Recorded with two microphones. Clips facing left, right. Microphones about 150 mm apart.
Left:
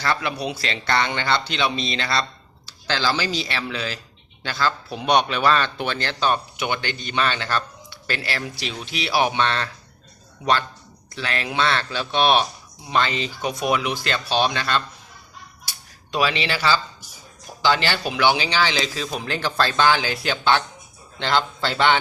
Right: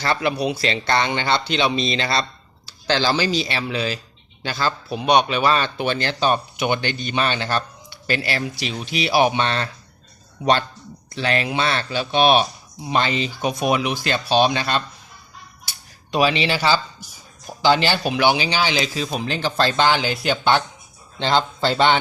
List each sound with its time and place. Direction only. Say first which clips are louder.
0.0 s speech: right 3 dB; 20° right (ahead or behind)
5.0 s speech: right 2 dB; 5° right (ahead or behind)
11.1 s speech: right 6 dB; 25° right (ahead or behind)
11.4 s speech: even; 15° right (ahead or behind)
16.1 s speech: right 4 dB; 20° right (ahead or behind)